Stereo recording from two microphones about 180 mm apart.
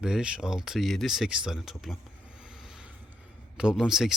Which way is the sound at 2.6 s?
5° right (ahead or behind).